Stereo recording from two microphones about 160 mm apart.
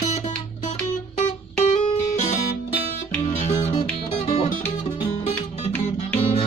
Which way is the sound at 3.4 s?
40° left (ahead or behind).